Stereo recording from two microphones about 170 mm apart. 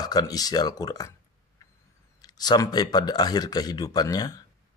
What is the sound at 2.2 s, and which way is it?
A man's voice, 25° left (ahead or behind).